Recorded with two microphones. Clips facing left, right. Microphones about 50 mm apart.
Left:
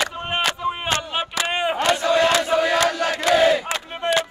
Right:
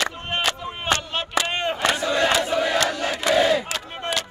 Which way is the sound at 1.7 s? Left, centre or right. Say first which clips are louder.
Left 4 dB; centre.